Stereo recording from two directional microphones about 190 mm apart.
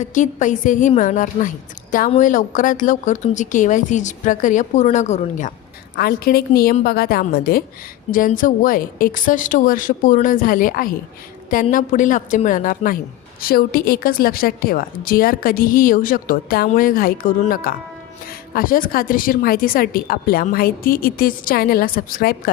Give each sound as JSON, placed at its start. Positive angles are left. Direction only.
{"t": 0.0, "sound": "a woman's voice", "side_deg": 40}
{"t": 6.0, "sound": "speech", "side_deg": 50}